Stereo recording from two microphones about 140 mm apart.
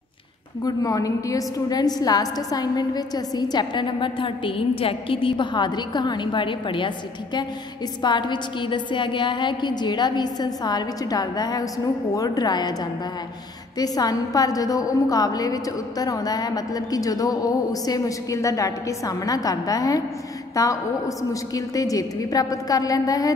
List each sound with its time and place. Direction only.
0.7 s a woman's voice: 25° left (ahead or behind)
8.0 s a woman's voice: 35° left (ahead or behind)
13.7 s a woman's voice: 25° left (ahead or behind)